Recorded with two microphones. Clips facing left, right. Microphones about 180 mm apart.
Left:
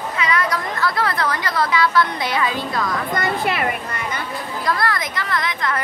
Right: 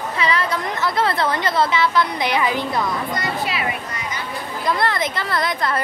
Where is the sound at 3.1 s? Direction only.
55° left (ahead or behind).